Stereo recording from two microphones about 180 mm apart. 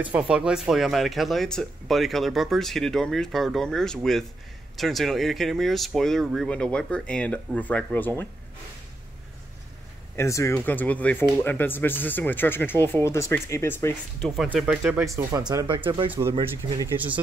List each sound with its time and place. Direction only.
0.0 s speech: 5° right (ahead or behind); by 8.1 s 10° left (ahead or behind)
10.1 s speech: 15° left (ahead or behind)
14.2 s speech: centre (ahead or behind); by 16.1 s 30° right (ahead or behind)
16.1 s speech: 15° right (ahead or behind)
16.9 s speech: 30° right (ahead or behind)